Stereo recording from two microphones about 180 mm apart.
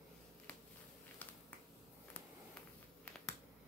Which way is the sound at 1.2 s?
10° left (ahead or behind).